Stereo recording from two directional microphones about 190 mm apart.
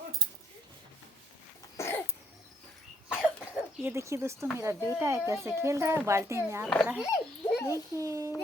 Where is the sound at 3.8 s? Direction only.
15° right (ahead or behind).